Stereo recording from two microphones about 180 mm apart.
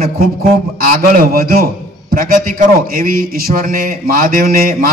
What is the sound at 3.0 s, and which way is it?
A man's voice, 55° right (ahead or behind).